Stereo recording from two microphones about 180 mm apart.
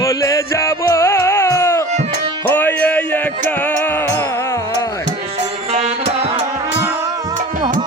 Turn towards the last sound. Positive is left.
turn(degrees=-35)  # may be behind; listen again after turning